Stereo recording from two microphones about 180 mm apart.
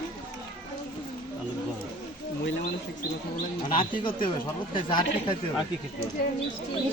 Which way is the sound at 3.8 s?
25° left (ahead or behind).